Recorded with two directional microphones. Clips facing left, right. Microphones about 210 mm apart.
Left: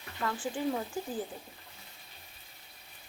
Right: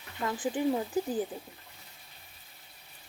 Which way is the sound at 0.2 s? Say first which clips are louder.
Right 3 dB; 15° right (ahead or behind).